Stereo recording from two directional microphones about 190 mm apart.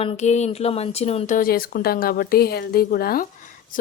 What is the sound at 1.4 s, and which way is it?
Speech, 50° left (ahead or behind).